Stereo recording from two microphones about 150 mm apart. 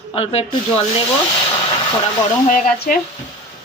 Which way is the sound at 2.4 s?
55° left (ahead or behind).